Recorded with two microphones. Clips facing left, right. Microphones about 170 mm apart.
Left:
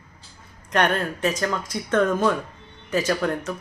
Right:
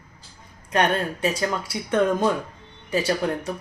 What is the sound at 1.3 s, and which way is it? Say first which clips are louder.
Speech: left 1 dB; 10° right (ahead or behind).